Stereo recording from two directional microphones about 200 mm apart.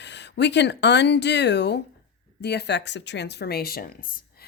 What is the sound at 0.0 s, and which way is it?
Speech, 60° left (ahead or behind).